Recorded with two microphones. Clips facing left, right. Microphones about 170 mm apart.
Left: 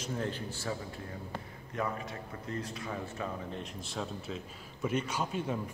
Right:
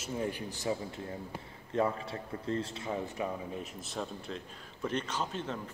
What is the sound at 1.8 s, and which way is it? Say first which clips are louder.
A man's voice: right 4 dB; 30° right (ahead or behind).